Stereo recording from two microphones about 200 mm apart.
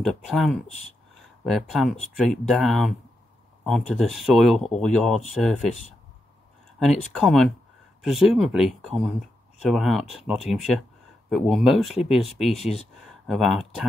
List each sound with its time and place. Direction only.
0.0 s speech: centre (ahead or behind)
6.8 s speech: centre (ahead or behind)